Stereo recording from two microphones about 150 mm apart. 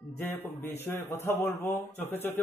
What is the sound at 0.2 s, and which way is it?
Speech, 15° left (ahead or behind).